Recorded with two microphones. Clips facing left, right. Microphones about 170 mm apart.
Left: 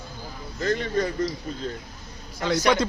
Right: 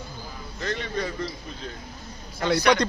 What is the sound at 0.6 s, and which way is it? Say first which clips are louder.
Speech: left 5 dB; 45° left (ahead or behind).